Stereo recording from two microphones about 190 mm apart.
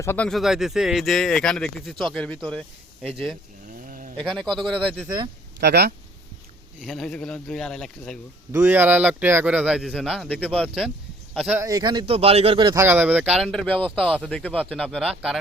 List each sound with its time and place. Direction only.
0.0 s speech: 10° left (ahead or behind)
3.7 s a sound: 45° right (ahead or behind)
4.2 s speech: centre (ahead or behind)
5.0 s speech: 25° right (ahead or behind)
5.5 s speech: 60° right (ahead or behind)
6.8 s speech: centre (ahead or behind)
8.5 s speech: 10° right (ahead or behind); by 10.7 s 5° left (ahead or behind)
11.3 s speech: 5° right (ahead or behind)
11.6 s speech: 20° right (ahead or behind)
12.8 s speech: 10° right (ahead or behind)